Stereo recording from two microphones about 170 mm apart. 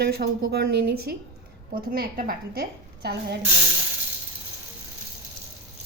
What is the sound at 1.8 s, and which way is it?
A woman's voice, 55° right (ahead or behind).